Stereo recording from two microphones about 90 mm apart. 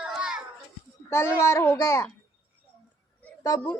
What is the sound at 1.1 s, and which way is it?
Speech, 30° left (ahead or behind).